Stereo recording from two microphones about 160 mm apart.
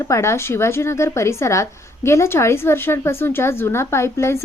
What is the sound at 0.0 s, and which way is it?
A woman's voice, 15° left (ahead or behind).